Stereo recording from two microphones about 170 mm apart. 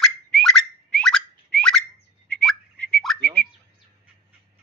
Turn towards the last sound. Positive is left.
turn(degrees=5)  # may be behind; listen again after turning